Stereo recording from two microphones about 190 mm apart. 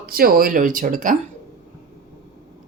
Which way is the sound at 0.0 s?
50° right (ahead or behind).